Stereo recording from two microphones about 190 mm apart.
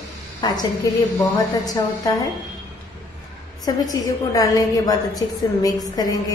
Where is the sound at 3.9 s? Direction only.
20° left (ahead or behind).